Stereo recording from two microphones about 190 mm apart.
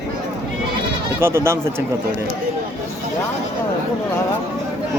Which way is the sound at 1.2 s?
15° right (ahead or behind).